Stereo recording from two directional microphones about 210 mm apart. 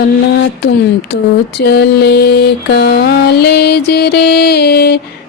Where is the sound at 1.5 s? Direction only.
50° left (ahead or behind).